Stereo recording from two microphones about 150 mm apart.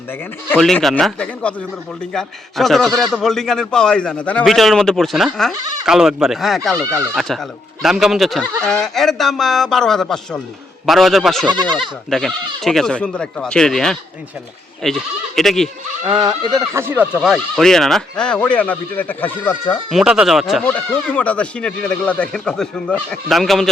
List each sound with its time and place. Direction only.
0.5 s speech: 5° left (ahead or behind)
11.4 s speech: 30° right (ahead or behind)
12.1 s speech: centre (ahead or behind)
16.0 s speech: 30° right (ahead or behind); by 19.7 s 15° left (ahead or behind)
19.9 s speech: 5° right (ahead or behind)
20.7 s speech: 10° left (ahead or behind)